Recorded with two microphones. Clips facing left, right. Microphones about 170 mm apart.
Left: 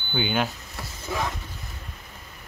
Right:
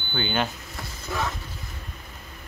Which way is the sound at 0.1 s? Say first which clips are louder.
Left 1 dB; 10° left (ahead or behind).